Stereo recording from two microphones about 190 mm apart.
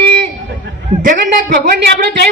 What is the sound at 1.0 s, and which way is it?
Speech, 45° right (ahead or behind).